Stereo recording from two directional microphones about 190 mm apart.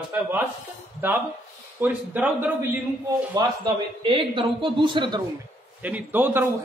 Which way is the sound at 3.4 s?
20° right (ahead or behind).